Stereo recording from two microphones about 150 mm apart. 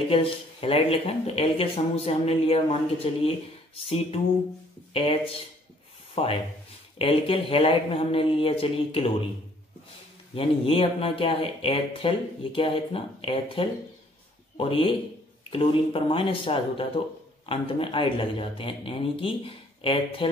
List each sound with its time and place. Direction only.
0.1 s speech: 40° left (ahead or behind)
10.3 s speech: 40° left (ahead or behind)